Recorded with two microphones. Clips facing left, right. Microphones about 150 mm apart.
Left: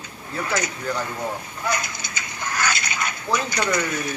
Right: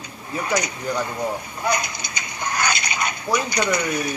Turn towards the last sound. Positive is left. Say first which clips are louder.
# right 2 dB
turn(degrees=-15)  # may be behind; listen again after turning